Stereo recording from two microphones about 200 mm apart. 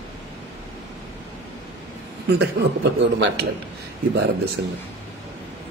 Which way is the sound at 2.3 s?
60° right (ahead or behind).